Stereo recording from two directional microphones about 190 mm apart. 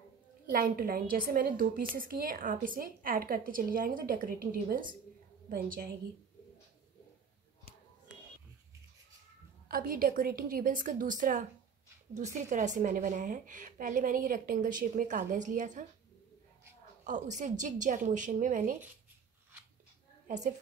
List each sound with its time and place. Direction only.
0.5 s a woman's voice: 50° right (ahead or behind)
9.7 s a woman's voice: 50° right (ahead or behind)
17.0 s a woman's voice: 40° right (ahead or behind)